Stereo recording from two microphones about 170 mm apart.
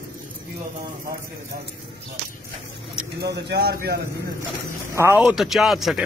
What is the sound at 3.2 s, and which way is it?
Speech, 75° right (ahead or behind).